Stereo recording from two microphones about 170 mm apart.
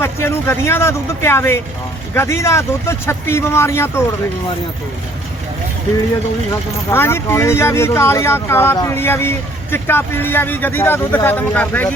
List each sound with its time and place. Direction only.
0.0 s speech: 15° left (ahead or behind)
6.9 s speech: 15° left (ahead or behind)